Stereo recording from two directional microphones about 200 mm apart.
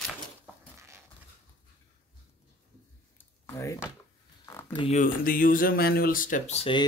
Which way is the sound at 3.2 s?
15° left (ahead or behind).